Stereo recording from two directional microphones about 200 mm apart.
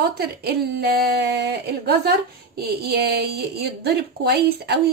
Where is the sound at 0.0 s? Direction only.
50° right (ahead or behind).